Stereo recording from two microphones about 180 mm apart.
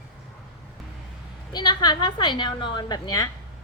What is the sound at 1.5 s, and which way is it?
A woman's voice, 25° left (ahead or behind).